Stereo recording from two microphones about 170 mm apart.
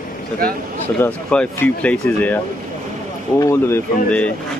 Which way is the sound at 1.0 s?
10° left (ahead or behind).